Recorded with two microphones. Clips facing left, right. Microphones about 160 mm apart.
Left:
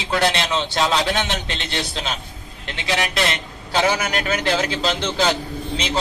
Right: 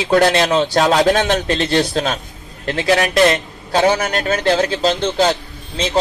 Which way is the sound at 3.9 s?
35° right (ahead or behind).